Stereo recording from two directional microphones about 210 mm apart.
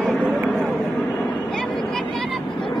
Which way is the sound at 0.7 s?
5° left (ahead or behind).